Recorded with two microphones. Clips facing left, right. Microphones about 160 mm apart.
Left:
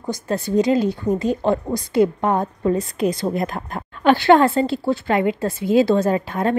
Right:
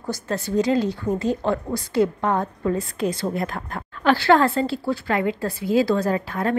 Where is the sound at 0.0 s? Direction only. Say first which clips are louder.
Left 3 dB; 15° left (ahead or behind).